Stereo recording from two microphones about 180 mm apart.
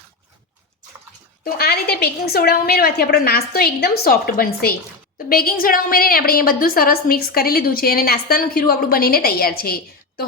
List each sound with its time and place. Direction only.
1.5 s a woman's voice: 60° left (ahead or behind)